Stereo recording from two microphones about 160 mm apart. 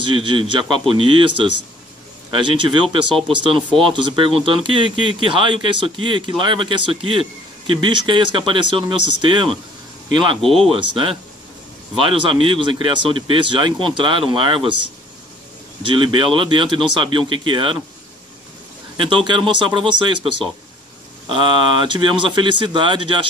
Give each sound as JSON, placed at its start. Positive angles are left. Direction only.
{"t": 0.0, "sound": "speech", "side_deg": -30}
{"t": 10.4, "sound": "speech", "side_deg": 0}
{"t": 10.7, "sound": "speech", "side_deg": -30}
{"t": 15.8, "sound": "speech", "side_deg": -30}
{"t": 18.9, "sound": "speech", "side_deg": -30}